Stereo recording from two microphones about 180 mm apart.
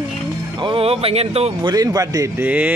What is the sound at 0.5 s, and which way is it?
Speech, 30° right (ahead or behind).